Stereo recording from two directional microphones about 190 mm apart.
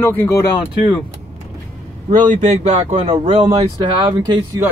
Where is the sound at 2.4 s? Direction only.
35° right (ahead or behind); by 4.6 s 20° right (ahead or behind).